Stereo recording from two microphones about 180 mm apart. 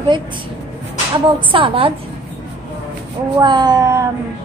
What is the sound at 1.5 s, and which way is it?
Speech, 30° right (ahead or behind).